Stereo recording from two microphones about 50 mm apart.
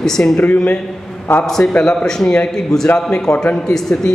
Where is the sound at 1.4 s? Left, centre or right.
Centre.